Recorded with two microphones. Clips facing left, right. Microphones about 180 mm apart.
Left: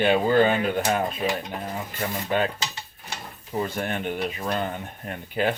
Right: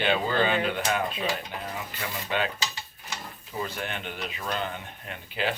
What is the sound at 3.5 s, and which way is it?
Speech, 45° left (ahead or behind).